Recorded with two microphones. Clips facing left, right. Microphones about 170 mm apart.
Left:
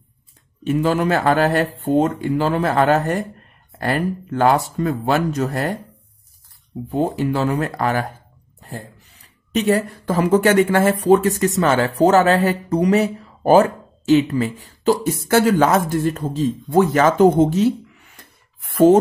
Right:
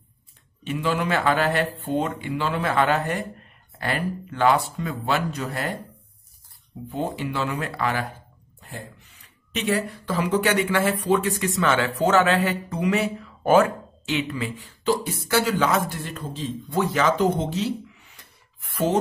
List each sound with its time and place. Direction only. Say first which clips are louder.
0.7 s speech: left 7 dB; 45° left (ahead or behind)
6.9 s speech: left 8 dB; 40° left (ahead or behind)